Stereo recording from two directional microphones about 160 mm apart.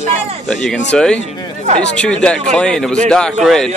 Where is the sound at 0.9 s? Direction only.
5° left (ahead or behind).